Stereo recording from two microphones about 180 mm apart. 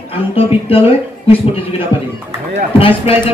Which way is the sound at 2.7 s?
30° left (ahead or behind).